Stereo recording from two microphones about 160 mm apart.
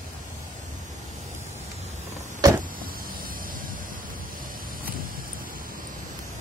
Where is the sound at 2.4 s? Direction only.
20° right (ahead or behind).